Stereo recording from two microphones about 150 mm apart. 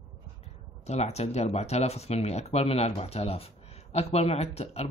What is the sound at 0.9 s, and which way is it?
Speech, 45° left (ahead or behind).